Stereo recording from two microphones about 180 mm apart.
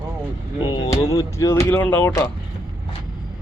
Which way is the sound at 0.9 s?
15° left (ahead or behind).